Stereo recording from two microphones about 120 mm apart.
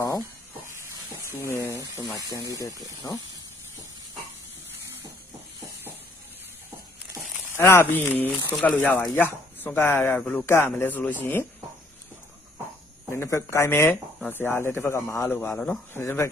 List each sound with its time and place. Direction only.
1.2 s a man's voice: 20° left (ahead or behind)
7.5 s speech: 20° left (ahead or behind)
13.1 s a man's voice: 20° left (ahead or behind)
15.5 s a man's voice: 5° left (ahead or behind)
15.9 s a man's voice: 20° left (ahead or behind)